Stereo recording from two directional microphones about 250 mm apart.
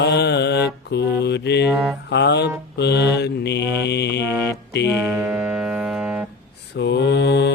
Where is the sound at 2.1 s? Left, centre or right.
Left.